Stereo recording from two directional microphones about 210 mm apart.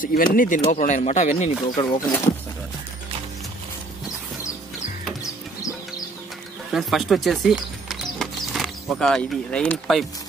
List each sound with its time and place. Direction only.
0.0 s speech: 40° left (ahead or behind)
1.8 s speech: 20° left (ahead or behind)
5.2 s music: 15° left (ahead or behind)
6.7 s speech: centre (ahead or behind)